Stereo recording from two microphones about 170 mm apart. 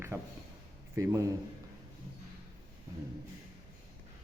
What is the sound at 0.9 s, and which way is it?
Speech, 20° right (ahead or behind).